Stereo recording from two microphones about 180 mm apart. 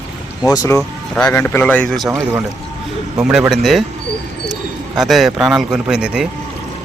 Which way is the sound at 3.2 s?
10° right (ahead or behind).